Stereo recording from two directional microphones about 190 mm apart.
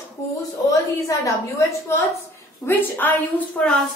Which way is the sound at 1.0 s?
15° left (ahead or behind).